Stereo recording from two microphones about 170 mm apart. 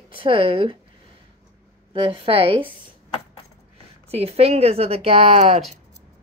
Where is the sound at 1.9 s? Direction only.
30° right (ahead or behind).